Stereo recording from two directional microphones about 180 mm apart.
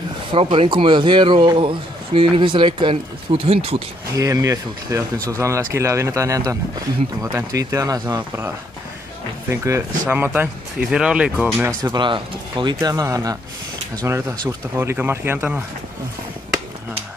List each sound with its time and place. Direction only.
0.3 s a man's voice: 30° right (ahead or behind)
4.1 s a man's voice: 20° right (ahead or behind)
9.5 s speech: 15° right (ahead or behind)
11.8 s a man's voice: 25° right (ahead or behind)